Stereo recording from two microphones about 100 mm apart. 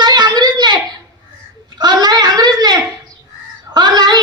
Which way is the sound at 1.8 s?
45° right (ahead or behind).